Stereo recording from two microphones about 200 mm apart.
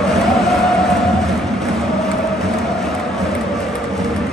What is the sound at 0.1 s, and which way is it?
Vehicle, centre (ahead or behind).